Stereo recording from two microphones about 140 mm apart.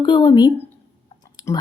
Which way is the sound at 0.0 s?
35° left (ahead or behind).